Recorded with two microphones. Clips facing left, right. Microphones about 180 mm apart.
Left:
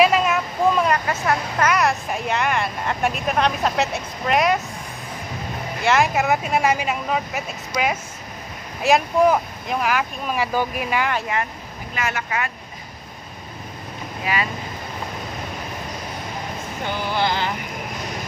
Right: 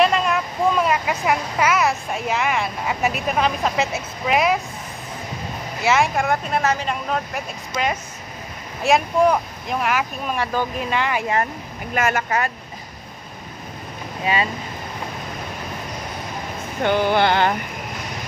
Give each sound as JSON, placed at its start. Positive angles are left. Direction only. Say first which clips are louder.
{"t": 0.0, "sound": "a sound", "louder": "left 1 dB", "side_deg": 5}
{"t": 1.7, "sound": "speech", "louder": "left 1 dB", "side_deg": 0}
{"t": 5.8, "sound": "speech", "louder": "even", "side_deg": 0}
{"t": 11.9, "sound": "speech", "louder": "right 5 dB", "side_deg": -50}
{"t": 14.2, "sound": "speech", "louder": "right 3 dB", "side_deg": -25}
{"t": 16.8, "sound": "speech", "louder": "right 6 dB", "side_deg": -60}